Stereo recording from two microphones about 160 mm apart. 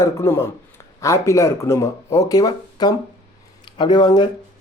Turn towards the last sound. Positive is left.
turn(degrees=25)  # may be behind; listen again after turning